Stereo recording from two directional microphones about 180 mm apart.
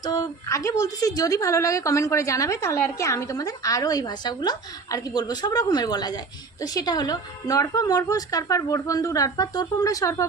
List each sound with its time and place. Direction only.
0.0 s a woman's voice: 25° left (ahead or behind)